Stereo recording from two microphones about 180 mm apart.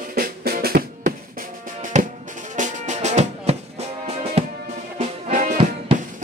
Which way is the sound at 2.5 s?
45° right (ahead or behind).